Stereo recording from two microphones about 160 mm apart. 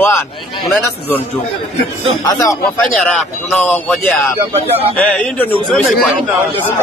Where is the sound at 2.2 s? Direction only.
20° left (ahead or behind).